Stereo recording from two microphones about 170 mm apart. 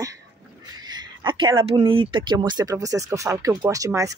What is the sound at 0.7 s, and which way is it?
Speech, 25° right (ahead or behind).